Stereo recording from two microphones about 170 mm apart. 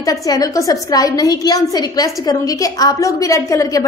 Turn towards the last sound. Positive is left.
turn(degrees=20)  # may be behind; listen again after turning